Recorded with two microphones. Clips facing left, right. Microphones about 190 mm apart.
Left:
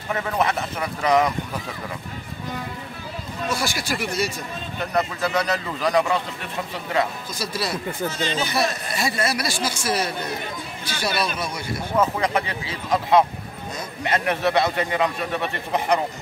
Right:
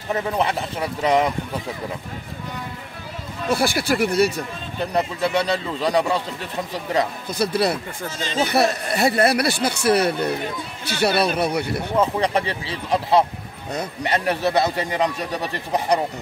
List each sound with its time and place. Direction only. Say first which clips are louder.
0.1 s speech: right 1 dB; 30° right (ahead or behind)
3.4 s speech: right 6 dB; 60° right (ahead or behind)
4.9 s speech: right 1 dB; 30° right (ahead or behind)
7.2 s speech: right 7 dB; 60° right (ahead or behind)
12.0 s speech: right 1 dB; 30° right (ahead or behind)